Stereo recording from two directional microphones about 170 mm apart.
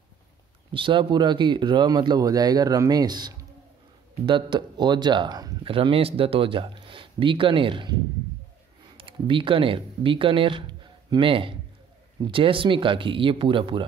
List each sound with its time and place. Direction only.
0.7 s speech: 30° right (ahead or behind)